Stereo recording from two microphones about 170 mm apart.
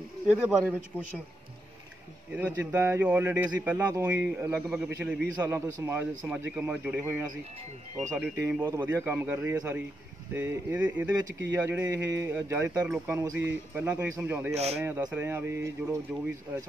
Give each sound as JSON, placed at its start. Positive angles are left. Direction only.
{"t": 0.7, "sound": "a man's voice", "side_deg": 10}
{"t": 2.3, "sound": "speech", "side_deg": -10}
{"t": 14.5, "sound": "speech", "side_deg": -40}
{"t": 14.8, "sound": "speech", "side_deg": -10}